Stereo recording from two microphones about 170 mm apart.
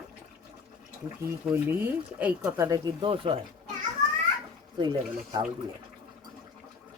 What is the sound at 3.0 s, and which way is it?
Speech, 30° right (ahead or behind).